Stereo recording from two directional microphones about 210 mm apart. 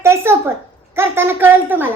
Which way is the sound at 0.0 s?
10° right (ahead or behind).